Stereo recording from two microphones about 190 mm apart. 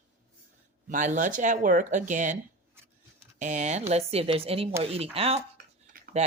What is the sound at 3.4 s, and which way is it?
Speech, 40° right (ahead or behind).